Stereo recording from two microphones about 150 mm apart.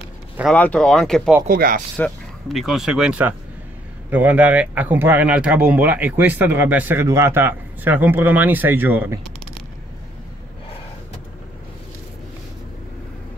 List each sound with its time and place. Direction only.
0.5 s speech: 5° left (ahead or behind)
1.5 s speech: 70° right (ahead or behind)
2.0 s speech: 5° left (ahead or behind); by 9.2 s 10° right (ahead or behind)